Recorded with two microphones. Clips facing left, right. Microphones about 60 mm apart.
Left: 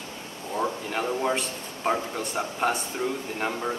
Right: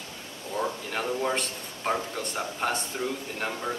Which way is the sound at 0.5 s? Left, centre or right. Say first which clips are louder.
Left 2 dB; centre.